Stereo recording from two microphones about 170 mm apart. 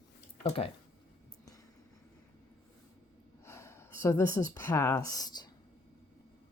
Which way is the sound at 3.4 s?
15° left (ahead or behind).